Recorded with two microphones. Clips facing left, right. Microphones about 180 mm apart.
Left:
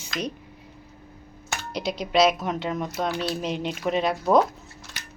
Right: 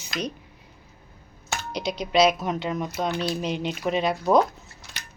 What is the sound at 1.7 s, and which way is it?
Speech, centre (ahead or behind).